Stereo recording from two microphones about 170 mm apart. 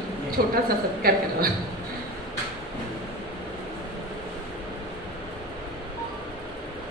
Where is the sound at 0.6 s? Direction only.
60° right (ahead or behind).